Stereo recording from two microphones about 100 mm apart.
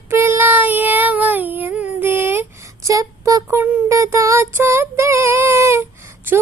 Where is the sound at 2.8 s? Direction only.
35° right (ahead or behind).